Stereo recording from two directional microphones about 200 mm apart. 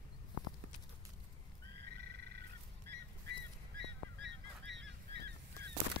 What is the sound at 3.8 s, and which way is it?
Goose, 60° right (ahead or behind).